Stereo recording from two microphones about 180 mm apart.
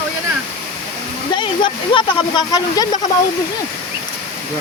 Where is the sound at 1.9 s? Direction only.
25° left (ahead or behind).